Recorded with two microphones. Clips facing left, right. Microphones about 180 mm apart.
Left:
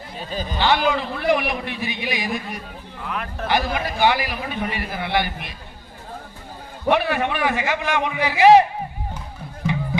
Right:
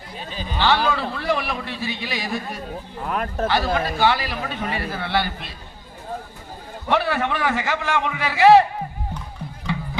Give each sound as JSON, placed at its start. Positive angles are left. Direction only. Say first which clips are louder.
{"t": 0.6, "sound": "a man's voice", "louder": "even", "side_deg": 15}
{"t": 3.0, "sound": "speech", "louder": "right 4 dB", "side_deg": -40}
{"t": 3.4, "sound": "a man's voice", "louder": "even", "side_deg": 15}
{"t": 6.9, "sound": "a man's voice", "louder": "even", "side_deg": 15}
{"t": 9.7, "sound": "music", "louder": "left 1 dB", "side_deg": 20}